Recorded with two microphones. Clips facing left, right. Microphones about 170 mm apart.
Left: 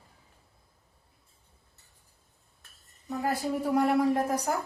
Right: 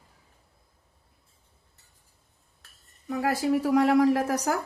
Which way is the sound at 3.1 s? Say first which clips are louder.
Right 5 dB; 90° right.